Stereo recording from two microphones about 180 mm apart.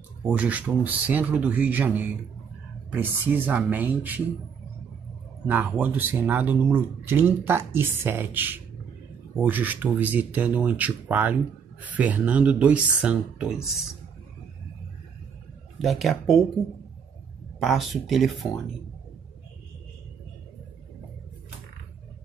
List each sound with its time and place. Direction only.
0.3 s speech: 10° right (ahead or behind)
5.5 s speech: 10° right (ahead or behind)
15.8 s speech: centre (ahead or behind)
17.6 s speech: centre (ahead or behind)